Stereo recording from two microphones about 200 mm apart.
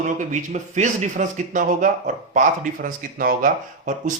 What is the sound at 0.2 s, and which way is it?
Speech, 40° right (ahead or behind).